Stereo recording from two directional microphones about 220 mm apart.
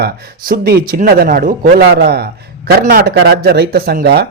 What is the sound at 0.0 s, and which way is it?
Speech, 40° right (ahead or behind).